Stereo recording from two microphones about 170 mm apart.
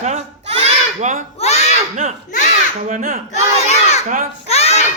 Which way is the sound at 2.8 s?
50° right (ahead or behind).